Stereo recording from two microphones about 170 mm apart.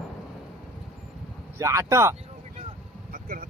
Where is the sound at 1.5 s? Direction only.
15° right (ahead or behind).